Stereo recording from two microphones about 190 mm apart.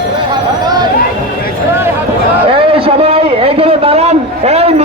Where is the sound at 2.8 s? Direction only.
30° right (ahead or behind).